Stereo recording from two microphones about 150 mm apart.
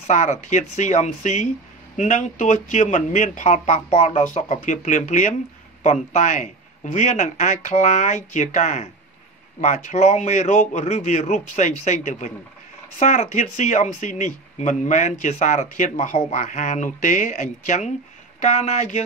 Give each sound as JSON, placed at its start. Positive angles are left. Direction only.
{"t": 0.0, "sound": "speech", "side_deg": 50}